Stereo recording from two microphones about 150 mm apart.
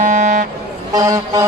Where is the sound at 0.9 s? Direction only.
25° right (ahead or behind).